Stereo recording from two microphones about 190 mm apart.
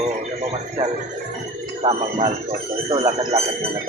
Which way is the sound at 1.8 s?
30° right (ahead or behind).